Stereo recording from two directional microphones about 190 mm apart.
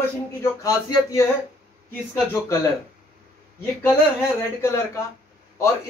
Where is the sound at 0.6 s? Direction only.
20° left (ahead or behind).